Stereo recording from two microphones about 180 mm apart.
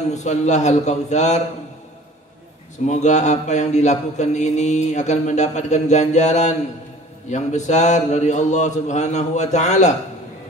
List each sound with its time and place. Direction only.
0.1 s mantra: 40° left (ahead or behind)
2.9 s mantra: 40° left (ahead or behind)